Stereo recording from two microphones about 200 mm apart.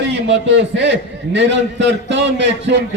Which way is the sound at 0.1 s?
60° right (ahead or behind).